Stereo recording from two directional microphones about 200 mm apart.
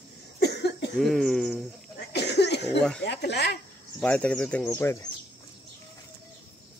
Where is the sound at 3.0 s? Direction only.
60° left (ahead or behind).